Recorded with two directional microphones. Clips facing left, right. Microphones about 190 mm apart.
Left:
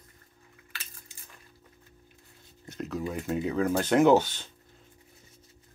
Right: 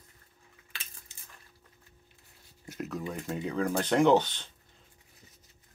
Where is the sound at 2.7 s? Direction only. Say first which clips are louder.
Left 3 dB; 5° right (ahead or behind).